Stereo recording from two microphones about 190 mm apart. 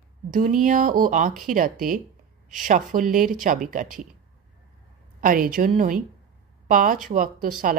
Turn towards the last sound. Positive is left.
turn(degrees=-45)  # may be behind; listen again after turning